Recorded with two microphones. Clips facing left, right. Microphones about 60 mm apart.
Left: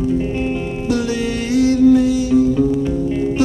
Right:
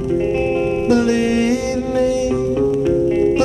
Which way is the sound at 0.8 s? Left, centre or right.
Right.